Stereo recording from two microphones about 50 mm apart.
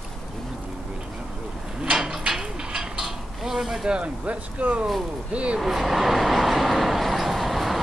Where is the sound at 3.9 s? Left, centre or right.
Right.